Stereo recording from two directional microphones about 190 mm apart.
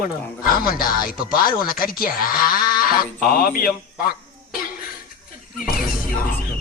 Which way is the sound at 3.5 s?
50° left (ahead or behind).